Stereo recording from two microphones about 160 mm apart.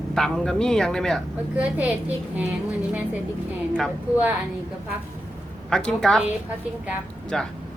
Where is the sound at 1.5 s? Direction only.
10° right (ahead or behind).